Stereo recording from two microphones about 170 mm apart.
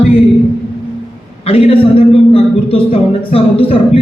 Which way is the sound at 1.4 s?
35° left (ahead or behind).